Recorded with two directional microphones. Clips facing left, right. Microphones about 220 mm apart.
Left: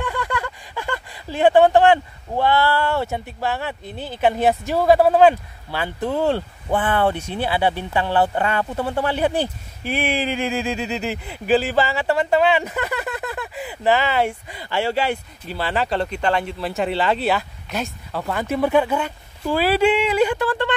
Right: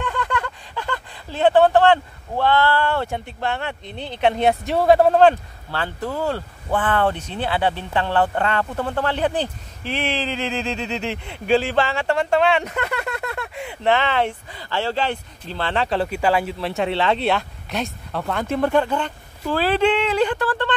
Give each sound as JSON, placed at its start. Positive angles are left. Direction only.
{"t": 0.0, "sound": "speech", "side_deg": 10}
{"t": 6.0, "sound": "speech", "side_deg": 25}
{"t": 6.7, "sound": "speech", "side_deg": 10}